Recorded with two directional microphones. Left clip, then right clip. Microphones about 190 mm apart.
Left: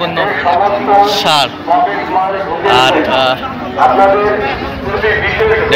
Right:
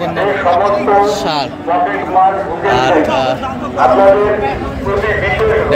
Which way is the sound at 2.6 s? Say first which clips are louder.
Left 2 dB; 10° right (ahead or behind).